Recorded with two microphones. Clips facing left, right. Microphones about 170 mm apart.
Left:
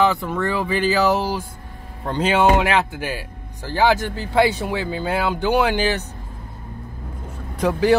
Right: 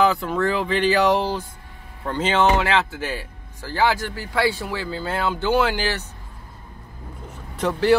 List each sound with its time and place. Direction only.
0.0 s speech: centre (ahead or behind); by 6.0 s 20° left (ahead or behind)
7.2 s vehicle: 10° left (ahead or behind)